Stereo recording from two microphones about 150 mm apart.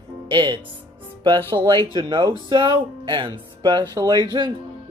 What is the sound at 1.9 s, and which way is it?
Speech, 30° right (ahead or behind).